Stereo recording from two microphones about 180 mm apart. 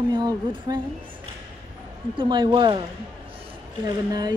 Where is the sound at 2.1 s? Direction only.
25° right (ahead or behind).